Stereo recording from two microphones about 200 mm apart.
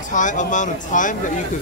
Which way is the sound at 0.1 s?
40° left (ahead or behind).